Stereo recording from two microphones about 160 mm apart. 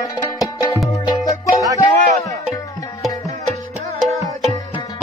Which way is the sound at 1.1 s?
20° left (ahead or behind).